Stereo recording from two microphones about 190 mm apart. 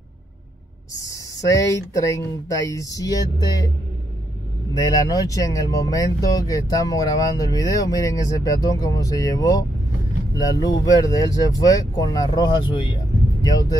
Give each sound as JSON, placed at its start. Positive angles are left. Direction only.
{"t": 1.1, "sound": "speech", "side_deg": 15}
{"t": 4.7, "sound": "speech", "side_deg": 20}